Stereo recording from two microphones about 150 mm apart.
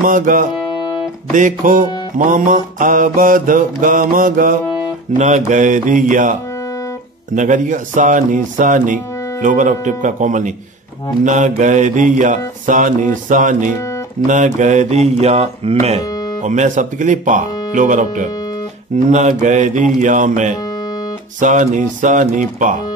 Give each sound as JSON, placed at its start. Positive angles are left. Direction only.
{"t": 0.0, "sound": "speech", "side_deg": -65}
{"t": 5.1, "sound": "speech", "side_deg": -50}
{"t": 7.3, "sound": "speech", "side_deg": -55}
{"t": 16.4, "sound": "speech", "side_deg": -55}